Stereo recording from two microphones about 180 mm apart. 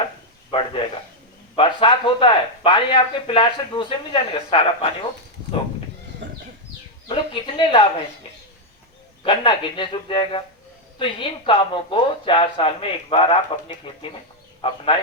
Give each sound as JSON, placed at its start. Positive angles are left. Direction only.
{"t": 0.5, "sound": "a sound", "side_deg": 30}
{"t": 1.5, "sound": "speech", "side_deg": 30}
{"t": 7.1, "sound": "speech", "side_deg": 30}
{"t": 9.2, "sound": "speech", "side_deg": 30}
{"t": 14.6, "sound": "speech", "side_deg": 30}